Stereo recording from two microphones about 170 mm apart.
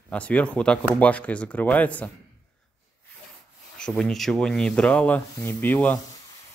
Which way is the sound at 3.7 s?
5° left (ahead or behind).